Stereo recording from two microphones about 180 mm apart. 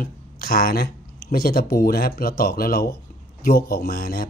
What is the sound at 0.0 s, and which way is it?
Speech, 55° left (ahead or behind).